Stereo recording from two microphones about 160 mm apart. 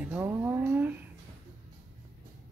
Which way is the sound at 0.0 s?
10° right (ahead or behind).